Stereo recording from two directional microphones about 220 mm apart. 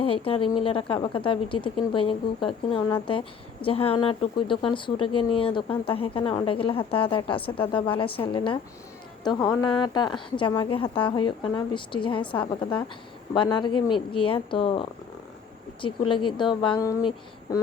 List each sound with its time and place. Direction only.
0.0 s a woman's voice: 25° left (ahead or behind)